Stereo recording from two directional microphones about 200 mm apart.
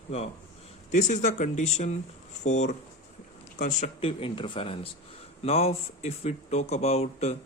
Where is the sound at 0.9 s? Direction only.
35° left (ahead or behind).